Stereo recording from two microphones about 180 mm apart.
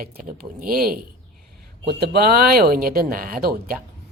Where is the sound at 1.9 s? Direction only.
60° right (ahead or behind).